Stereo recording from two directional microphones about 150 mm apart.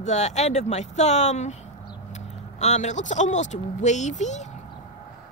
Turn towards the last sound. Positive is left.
turn(degrees=50)  # may be behind; listen again after turning